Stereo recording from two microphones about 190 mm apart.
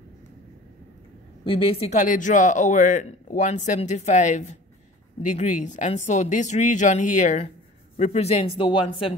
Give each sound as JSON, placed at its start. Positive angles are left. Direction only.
{"t": 1.4, "sound": "a man's voice", "side_deg": 30}